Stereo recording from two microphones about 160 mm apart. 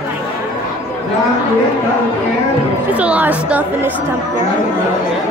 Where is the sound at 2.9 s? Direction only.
10° right (ahead or behind).